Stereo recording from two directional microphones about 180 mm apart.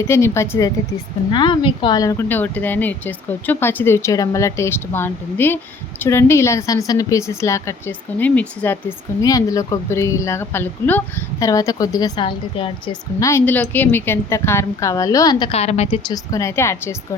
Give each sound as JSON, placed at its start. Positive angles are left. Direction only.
{"t": 0.1, "sound": "speech", "side_deg": 15}
{"t": 1.3, "sound": "a woman's voice", "side_deg": 25}
{"t": 13.1, "sound": "speech", "side_deg": 15}
{"t": 15.5, "sound": "a woman's voice", "side_deg": 35}
{"t": 16.0, "sound": "speech", "side_deg": 20}